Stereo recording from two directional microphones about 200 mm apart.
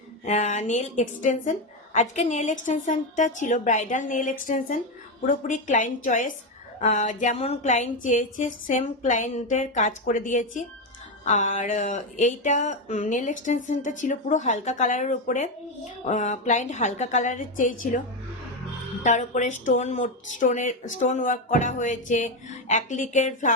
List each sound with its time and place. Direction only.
0.3 s a woman's voice: 35° left (ahead or behind)
19.0 s a woman's voice: 35° left (ahead or behind)